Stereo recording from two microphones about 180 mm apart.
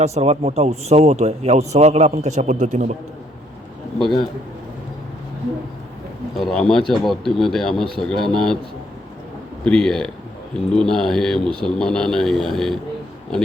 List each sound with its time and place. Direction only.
0.0 s a man's voice: 35° right (ahead or behind)
6.3 s speech: 5° left (ahead or behind)
9.6 s speech: 5° left (ahead or behind)